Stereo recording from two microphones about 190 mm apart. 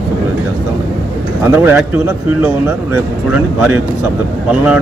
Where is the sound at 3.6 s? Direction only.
10° right (ahead or behind).